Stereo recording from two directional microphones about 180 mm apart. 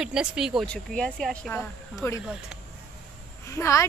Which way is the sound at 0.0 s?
5° right (ahead or behind).